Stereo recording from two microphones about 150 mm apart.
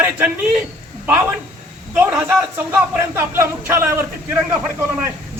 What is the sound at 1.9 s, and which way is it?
A man's voice, 15° right (ahead or behind).